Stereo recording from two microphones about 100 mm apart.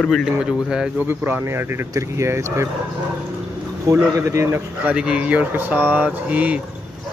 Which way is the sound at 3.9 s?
30° right (ahead or behind).